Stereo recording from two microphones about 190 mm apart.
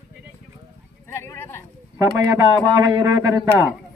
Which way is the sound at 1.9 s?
15° right (ahead or behind).